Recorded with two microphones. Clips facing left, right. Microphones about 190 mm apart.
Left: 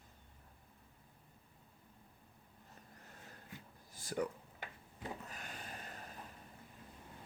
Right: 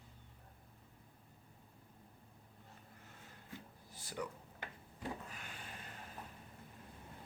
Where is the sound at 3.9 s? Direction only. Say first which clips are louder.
Left 7 dB; 45° left (ahead or behind).